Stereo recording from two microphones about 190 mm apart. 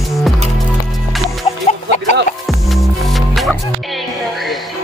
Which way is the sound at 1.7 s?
35° left (ahead or behind).